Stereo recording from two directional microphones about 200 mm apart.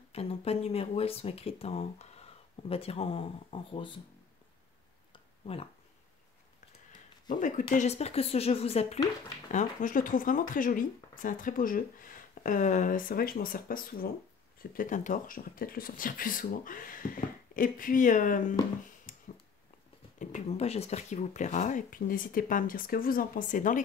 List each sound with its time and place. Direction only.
0.1 s speech: 30° left (ahead or behind)
5.4 s speech: 30° left (ahead or behind)
7.2 s speech: 40° left (ahead or behind)
19.1 s a sound: 40° left (ahead or behind)
20.2 s speech: 35° left (ahead or behind)